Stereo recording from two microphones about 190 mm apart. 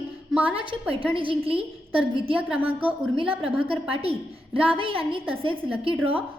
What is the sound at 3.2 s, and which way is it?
A woman's voice, 30° right (ahead or behind).